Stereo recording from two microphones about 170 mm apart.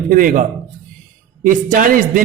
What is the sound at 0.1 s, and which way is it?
Speech, 50° right (ahead or behind).